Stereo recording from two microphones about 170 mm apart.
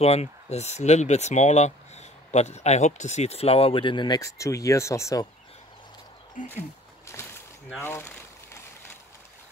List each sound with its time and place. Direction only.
0.0 s speech: 40° left (ahead or behind); by 5.3 s 20° left (ahead or behind)
6.4 s speech: 50° left (ahead or behind)
7.8 s speech: 15° left (ahead or behind)